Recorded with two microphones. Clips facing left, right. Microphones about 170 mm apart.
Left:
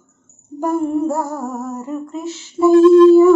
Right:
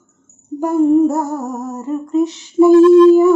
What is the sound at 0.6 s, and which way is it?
Music, 20° right (ahead or behind).